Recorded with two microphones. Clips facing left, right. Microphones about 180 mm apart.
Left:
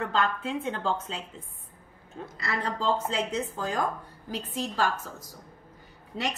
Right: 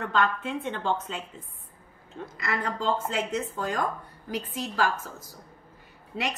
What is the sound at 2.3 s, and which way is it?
A woman's voice, 30° left (ahead or behind).